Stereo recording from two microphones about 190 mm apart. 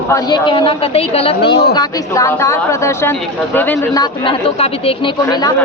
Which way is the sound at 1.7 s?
15° left (ahead or behind).